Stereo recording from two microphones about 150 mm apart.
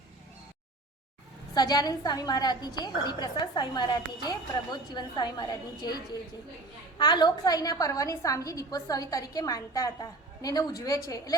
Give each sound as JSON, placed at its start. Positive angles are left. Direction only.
{"t": 1.5, "sound": "a woman's voice", "side_deg": 25}
{"t": 7.0, "sound": "a woman's voice", "side_deg": 30}